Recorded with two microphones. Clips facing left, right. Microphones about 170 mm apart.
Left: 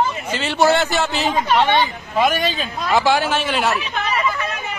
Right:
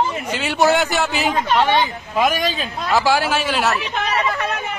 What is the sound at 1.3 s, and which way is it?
Speech, centre (ahead or behind).